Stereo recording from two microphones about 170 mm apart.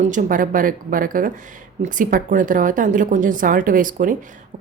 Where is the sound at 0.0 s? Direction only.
50° right (ahead or behind).